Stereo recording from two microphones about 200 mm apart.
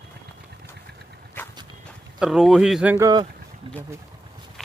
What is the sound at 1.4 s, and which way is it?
Walk, 10° left (ahead or behind).